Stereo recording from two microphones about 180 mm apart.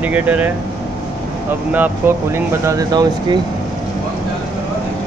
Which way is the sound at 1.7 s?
10° right (ahead or behind).